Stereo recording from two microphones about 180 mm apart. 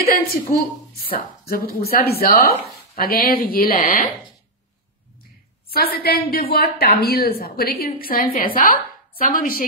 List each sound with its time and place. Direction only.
0.1 s a woman's voice: 45° left (ahead or behind)
1.1 s a woman's voice: 55° left (ahead or behind)
5.7 s a woman's voice: 55° left (ahead or behind)